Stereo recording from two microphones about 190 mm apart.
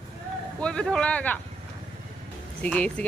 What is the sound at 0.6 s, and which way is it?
Speech, 5° left (ahead or behind).